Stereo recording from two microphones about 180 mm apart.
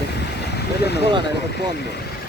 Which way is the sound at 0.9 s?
65° left (ahead or behind).